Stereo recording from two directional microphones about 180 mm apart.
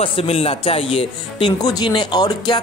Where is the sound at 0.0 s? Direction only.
30° left (ahead or behind).